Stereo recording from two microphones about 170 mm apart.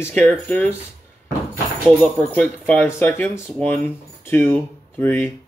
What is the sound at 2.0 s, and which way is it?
Speech, 10° left (ahead or behind).